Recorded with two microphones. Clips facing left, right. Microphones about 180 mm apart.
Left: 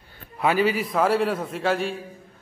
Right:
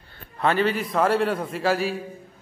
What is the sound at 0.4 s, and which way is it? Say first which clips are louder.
A man's voice: left 1 dB; 5° left (ahead or behind).